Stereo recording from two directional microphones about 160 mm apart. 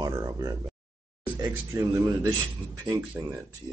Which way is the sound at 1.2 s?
15° right (ahead or behind).